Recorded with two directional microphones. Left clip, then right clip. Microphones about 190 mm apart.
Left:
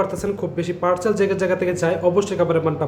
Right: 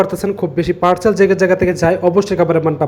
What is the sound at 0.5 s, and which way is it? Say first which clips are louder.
Speech: right 7 dB; 30° right (ahead or behind).